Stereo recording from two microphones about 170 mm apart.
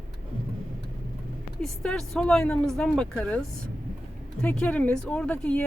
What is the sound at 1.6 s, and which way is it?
Speech, 5° left (ahead or behind).